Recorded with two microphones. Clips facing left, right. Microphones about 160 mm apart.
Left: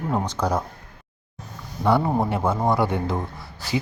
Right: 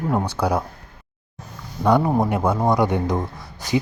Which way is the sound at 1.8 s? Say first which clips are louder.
Right 3 dB; 15° right (ahead or behind).